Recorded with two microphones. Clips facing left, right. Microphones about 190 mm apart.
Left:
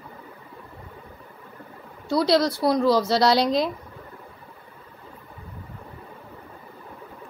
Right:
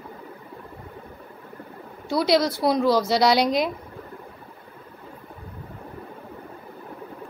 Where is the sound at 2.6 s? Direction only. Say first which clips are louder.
Even; 15° right (ahead or behind).